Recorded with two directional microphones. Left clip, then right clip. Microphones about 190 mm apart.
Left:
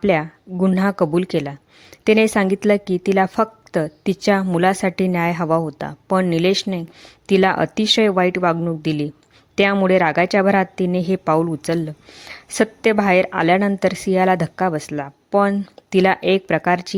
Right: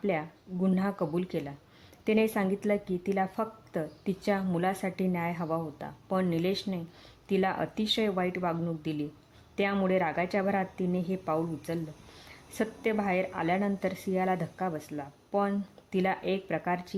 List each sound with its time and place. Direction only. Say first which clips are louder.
0.0 s a woman's voice: left 13 dB; 40° left (ahead or behind)